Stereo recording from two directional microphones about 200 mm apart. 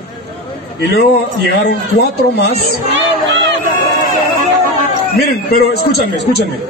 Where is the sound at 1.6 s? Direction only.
55° left (ahead or behind).